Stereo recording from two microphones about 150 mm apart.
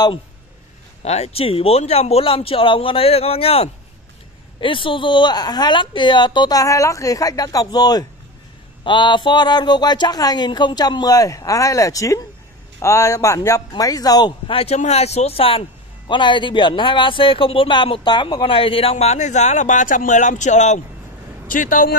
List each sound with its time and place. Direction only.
1.0 s speech: 45° left (ahead or behind)
21.5 s speech: 65° left (ahead or behind)